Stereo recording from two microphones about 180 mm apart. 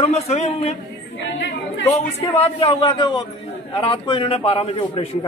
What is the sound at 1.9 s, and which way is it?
A man's voice, 35° left (ahead or behind).